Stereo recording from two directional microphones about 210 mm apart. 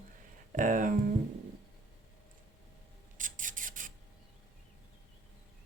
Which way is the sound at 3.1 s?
40° right (ahead or behind).